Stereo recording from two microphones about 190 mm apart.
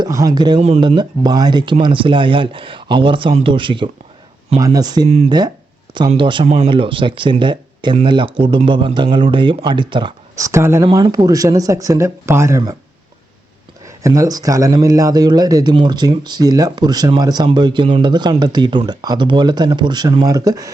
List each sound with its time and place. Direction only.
0.0 s speech: 20° right (ahead or behind)
5.0 s speech: 35° right (ahead or behind); by 12.7 s 15° right (ahead or behind)
13.8 s speech: 15° right (ahead or behind)